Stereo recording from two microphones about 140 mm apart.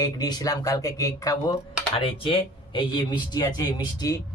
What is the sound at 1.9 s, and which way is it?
Speech, 35° left (ahead or behind).